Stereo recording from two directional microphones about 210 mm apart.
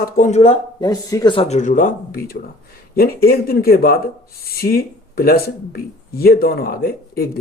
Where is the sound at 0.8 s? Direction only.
15° left (ahead or behind).